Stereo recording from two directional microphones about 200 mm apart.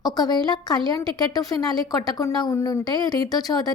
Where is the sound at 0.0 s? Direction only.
20° left (ahead or behind).